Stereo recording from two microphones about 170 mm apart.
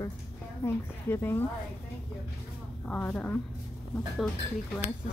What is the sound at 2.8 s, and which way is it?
Speech, 10° left (ahead or behind).